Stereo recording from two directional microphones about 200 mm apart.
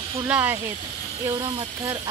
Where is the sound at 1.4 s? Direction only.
20° right (ahead or behind).